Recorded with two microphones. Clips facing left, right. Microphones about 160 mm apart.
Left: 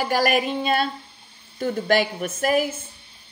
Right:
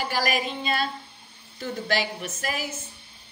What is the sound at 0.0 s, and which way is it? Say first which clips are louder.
A woman's voice: left 6 dB; 50° left (ahead or behind).